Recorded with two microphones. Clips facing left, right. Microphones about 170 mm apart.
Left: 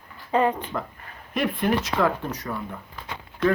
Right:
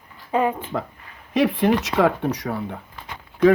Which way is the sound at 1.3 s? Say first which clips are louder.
Right 5 dB; 90° right.